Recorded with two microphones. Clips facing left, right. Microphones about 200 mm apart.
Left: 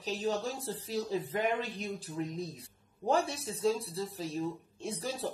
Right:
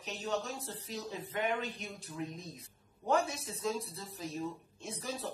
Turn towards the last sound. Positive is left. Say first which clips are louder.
# left 4 dB
turn(degrees=30)  # may be behind; listen again after turning